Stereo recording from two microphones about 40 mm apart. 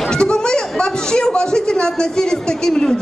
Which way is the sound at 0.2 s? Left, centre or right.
Left.